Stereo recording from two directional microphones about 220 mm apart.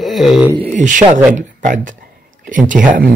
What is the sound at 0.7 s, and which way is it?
Speech, 35° right (ahead or behind).